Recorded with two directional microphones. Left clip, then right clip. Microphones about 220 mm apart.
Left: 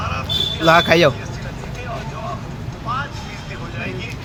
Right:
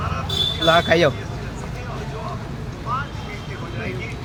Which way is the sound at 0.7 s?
25° left (ahead or behind).